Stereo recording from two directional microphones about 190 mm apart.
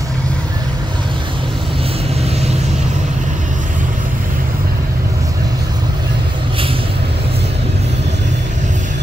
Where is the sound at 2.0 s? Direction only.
35° right (ahead or behind).